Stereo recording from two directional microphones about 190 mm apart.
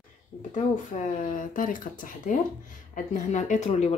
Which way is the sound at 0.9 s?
45° left (ahead or behind).